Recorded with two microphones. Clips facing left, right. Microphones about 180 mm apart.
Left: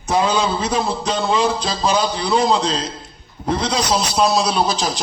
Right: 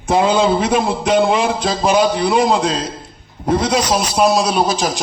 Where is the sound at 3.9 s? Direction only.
10° right (ahead or behind).